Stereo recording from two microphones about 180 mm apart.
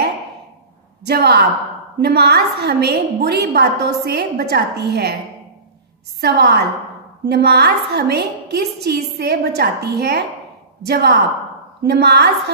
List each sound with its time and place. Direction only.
1.0 s a woman's voice: 65° right (ahead or behind)
6.2 s a woman's voice: 65° right (ahead or behind)